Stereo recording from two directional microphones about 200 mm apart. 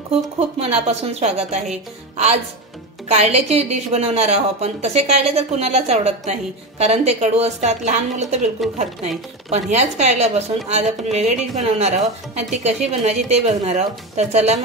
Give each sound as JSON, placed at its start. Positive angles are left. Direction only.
{"t": 0.6, "sound": "a woman's voice", "side_deg": -30}
{"t": 9.5, "sound": "a woman's voice", "side_deg": -35}